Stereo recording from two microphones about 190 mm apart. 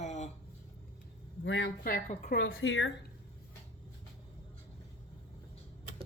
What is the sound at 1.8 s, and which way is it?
Speech, 45° left (ahead or behind).